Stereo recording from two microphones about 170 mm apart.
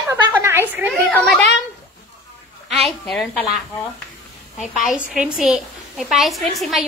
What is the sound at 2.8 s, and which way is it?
Speech, centre (ahead or behind).